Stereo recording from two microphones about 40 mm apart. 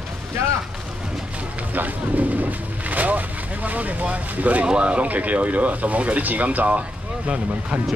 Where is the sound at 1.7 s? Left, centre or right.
Right.